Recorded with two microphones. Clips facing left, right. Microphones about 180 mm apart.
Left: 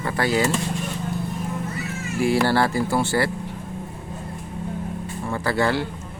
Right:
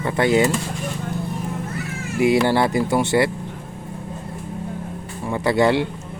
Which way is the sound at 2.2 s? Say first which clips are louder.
Right 3 dB; 20° right (ahead or behind).